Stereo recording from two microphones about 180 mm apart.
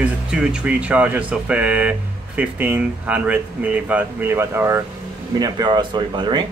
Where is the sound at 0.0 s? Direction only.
5° right (ahead or behind).